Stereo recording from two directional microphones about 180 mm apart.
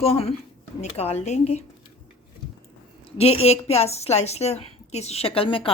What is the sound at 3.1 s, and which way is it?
A woman's voice, 35° left (ahead or behind).